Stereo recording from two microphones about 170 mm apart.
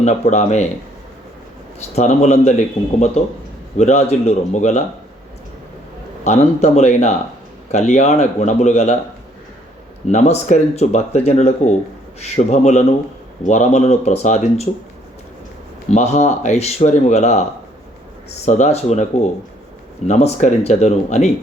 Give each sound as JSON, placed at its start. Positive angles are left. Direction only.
{"t": 0.0, "sound": "speech", "side_deg": 45}
{"t": 2.0, "sound": "speech", "side_deg": 40}
{"t": 6.2, "sound": "speech", "side_deg": 40}
{"t": 10.1, "sound": "speech", "side_deg": 40}
{"t": 15.9, "sound": "speech", "side_deg": 40}
{"t": 18.4, "sound": "speech", "side_deg": 40}
{"t": 20.1, "sound": "speech", "side_deg": 40}